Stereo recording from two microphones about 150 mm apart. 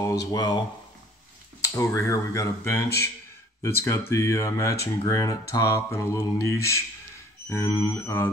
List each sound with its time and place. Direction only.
0.0 s speech: 25° left (ahead or behind)
1.6 s a sound: 20° left (ahead or behind)
7.4 s speech: 15° left (ahead or behind)